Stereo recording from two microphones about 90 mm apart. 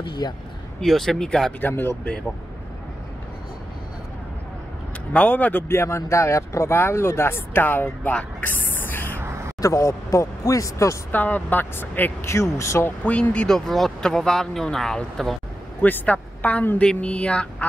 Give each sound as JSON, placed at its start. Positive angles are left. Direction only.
{"t": 0.2, "sound": "speech", "side_deg": 50}
{"t": 0.7, "sound": "speech", "side_deg": 5}
{"t": 1.6, "sound": "speech", "side_deg": 25}
{"t": 5.1, "sound": "speech", "side_deg": 15}
{"t": 5.7, "sound": "speech", "side_deg": 30}
{"t": 9.6, "sound": "speech", "side_deg": 35}
{"t": 11.1, "sound": "speech", "side_deg": 20}
{"t": 12.3, "sound": "speech", "side_deg": 35}
{"t": 13.0, "sound": "speech", "side_deg": 15}
{"t": 15.8, "sound": "speech", "side_deg": 15}